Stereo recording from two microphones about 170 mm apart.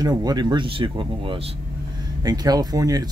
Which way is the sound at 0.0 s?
25° right (ahead or behind).